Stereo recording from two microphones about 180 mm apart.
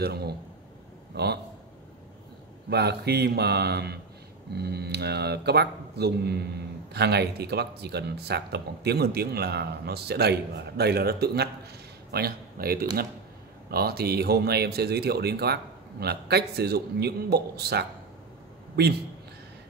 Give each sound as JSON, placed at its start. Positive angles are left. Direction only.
{"t": 0.0, "sound": "a man's voice", "side_deg": -65}
{"t": 2.7, "sound": "a man's voice", "side_deg": -65}